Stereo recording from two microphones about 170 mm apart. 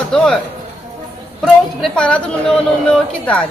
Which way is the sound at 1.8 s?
5° left (ahead or behind).